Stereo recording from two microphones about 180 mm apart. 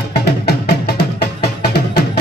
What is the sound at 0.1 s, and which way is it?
Music, 65° left (ahead or behind).